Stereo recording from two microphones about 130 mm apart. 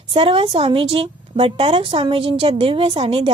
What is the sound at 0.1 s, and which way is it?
A woman's voice, 45° right (ahead or behind).